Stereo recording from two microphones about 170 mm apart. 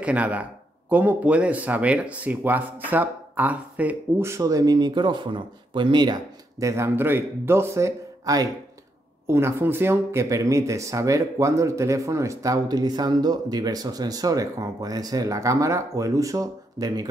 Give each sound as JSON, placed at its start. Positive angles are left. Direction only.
{"t": 0.0, "sound": "speech", "side_deg": -10}